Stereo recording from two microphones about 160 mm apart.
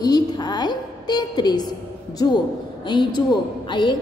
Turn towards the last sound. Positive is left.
turn(degrees=30)  # may be behind; listen again after turning